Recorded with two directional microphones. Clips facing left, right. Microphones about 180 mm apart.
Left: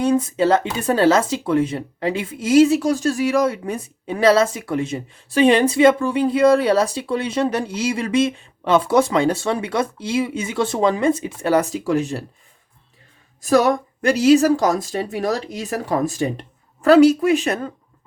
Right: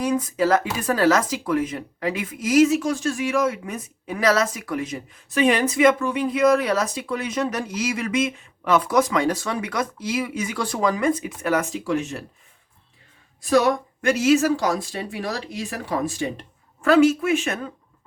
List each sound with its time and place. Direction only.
0.0 s speech: 25° left (ahead or behind)
13.4 s a woman's voice: 45° left (ahead or behind)